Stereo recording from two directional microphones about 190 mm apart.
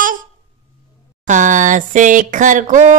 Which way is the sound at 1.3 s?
40° right (ahead or behind).